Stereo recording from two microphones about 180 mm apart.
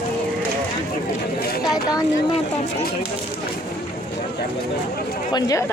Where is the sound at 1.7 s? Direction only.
20° left (ahead or behind).